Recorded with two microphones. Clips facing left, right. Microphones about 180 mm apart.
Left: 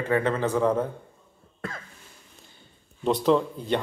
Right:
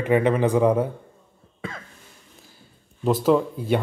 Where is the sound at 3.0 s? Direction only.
5° right (ahead or behind).